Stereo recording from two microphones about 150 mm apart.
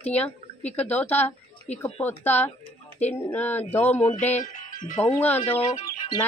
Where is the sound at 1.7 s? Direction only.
50° left (ahead or behind).